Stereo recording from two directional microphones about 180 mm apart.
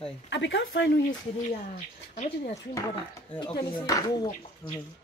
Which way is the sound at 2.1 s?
40° left (ahead or behind).